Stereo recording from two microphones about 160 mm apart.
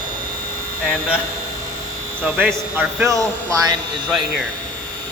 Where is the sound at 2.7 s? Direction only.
15° right (ahead or behind).